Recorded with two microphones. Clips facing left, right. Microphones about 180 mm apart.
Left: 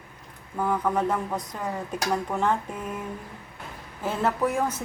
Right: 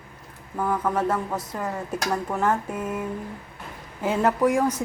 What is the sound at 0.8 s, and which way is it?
A woman's voice, 5° right (ahead or behind).